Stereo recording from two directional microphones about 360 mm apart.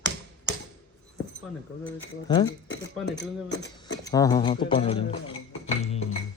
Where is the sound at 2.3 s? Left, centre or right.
Centre.